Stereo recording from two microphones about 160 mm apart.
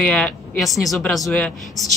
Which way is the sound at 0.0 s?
5° left (ahead or behind).